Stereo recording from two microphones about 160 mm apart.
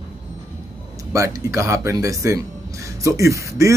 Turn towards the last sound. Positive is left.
turn(degrees=-20)  # may be behind; listen again after turning